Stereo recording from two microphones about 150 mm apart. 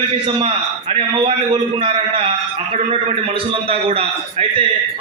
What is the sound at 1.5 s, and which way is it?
Speech, 40° right (ahead or behind).